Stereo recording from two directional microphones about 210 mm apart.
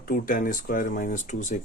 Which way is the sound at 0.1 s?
40° left (ahead or behind).